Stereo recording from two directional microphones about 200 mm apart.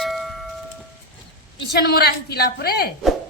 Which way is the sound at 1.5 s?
55° left (ahead or behind).